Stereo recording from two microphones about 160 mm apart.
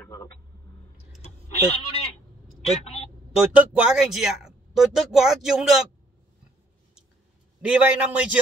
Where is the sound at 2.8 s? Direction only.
40° left (ahead or behind).